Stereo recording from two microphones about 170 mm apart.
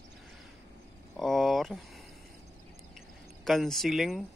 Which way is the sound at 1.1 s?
Centre (ahead or behind).